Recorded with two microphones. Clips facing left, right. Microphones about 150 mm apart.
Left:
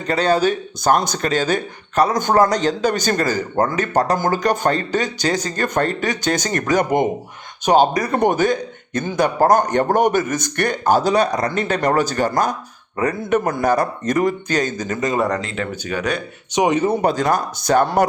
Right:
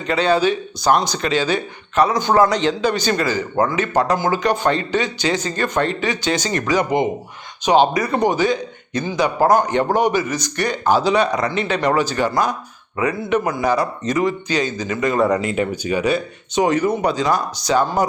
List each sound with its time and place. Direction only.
0.1 s a man's voice: 40° left (ahead or behind)
15.3 s speech: 15° right (ahead or behind)
16.6 s speech: 15° left (ahead or behind)
17.0 s a man's voice: 50° left (ahead or behind)